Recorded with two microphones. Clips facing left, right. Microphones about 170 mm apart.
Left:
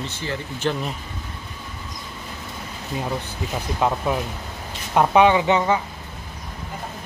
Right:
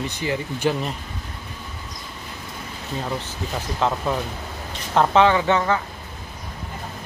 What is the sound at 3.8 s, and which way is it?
Speech, 10° left (ahead or behind).